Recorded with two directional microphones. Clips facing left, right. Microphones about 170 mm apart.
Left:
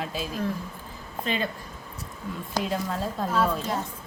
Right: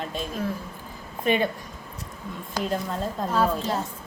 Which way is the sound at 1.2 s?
15° right (ahead or behind).